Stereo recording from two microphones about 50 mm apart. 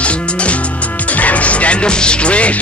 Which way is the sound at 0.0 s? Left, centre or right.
Left.